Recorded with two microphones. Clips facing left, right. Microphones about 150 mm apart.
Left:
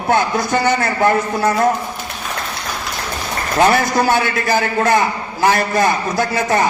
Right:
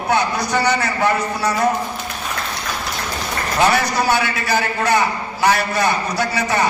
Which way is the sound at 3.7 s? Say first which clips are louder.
Left 3 dB; 50° left (ahead or behind).